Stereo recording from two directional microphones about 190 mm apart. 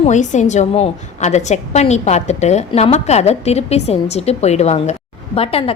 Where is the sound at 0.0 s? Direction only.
40° left (ahead or behind).